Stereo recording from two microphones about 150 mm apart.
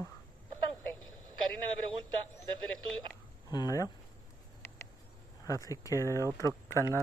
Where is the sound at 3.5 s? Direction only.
25° left (ahead or behind).